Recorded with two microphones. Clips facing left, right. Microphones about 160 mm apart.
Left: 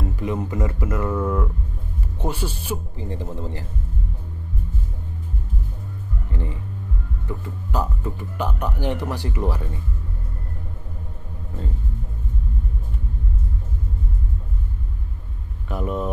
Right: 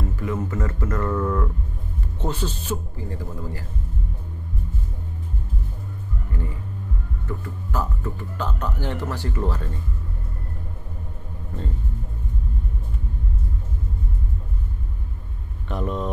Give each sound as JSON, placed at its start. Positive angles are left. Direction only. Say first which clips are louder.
{"t": 0.1, "sound": "speech", "louder": "left 1 dB", "side_deg": 20}
{"t": 3.1, "sound": "a man's voice", "louder": "left 3 dB", "side_deg": 25}
{"t": 7.2, "sound": "speech", "louder": "even", "side_deg": 15}
{"t": 15.7, "sound": "speech", "louder": "left 1 dB", "side_deg": 5}